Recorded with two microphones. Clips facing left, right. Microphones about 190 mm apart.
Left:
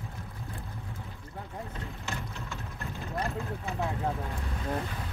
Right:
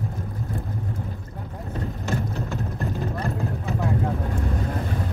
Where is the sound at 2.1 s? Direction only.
40° right (ahead or behind).